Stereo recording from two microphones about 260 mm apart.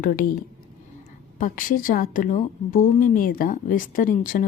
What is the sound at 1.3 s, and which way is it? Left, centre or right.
A woman's voice, left.